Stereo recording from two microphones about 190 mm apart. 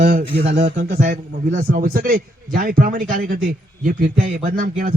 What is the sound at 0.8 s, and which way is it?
A man's voice, 50° right (ahead or behind).